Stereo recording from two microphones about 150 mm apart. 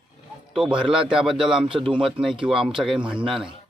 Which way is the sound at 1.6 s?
35° right (ahead or behind).